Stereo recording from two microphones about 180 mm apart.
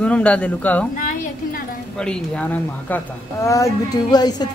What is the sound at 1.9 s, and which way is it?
A woman's voice, 5° left (ahead or behind).